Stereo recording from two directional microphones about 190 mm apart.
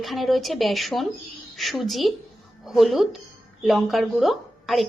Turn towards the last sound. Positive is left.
turn(degrees=0)  # may be behind; listen again after turning